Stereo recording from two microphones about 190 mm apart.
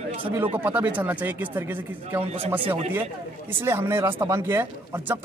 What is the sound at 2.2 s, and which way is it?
Speech, 30° right (ahead or behind).